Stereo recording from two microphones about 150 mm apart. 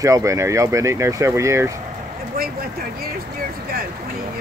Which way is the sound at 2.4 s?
75° right (ahead or behind).